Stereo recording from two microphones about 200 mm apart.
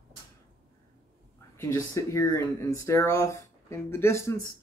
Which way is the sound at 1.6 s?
15° left (ahead or behind).